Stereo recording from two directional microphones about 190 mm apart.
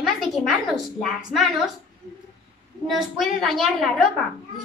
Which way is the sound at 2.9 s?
Centre (ahead or behind).